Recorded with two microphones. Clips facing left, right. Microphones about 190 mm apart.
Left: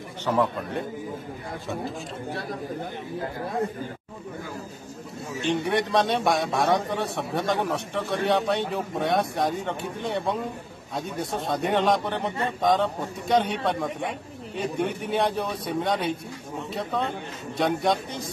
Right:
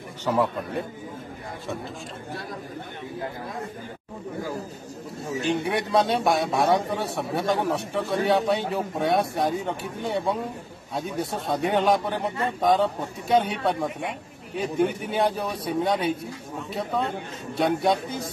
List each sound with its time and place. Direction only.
0.2 s a man's voice: 10° right (ahead or behind)
5.4 s a man's voice: centre (ahead or behind)
17.6 s a man's voice: centre (ahead or behind)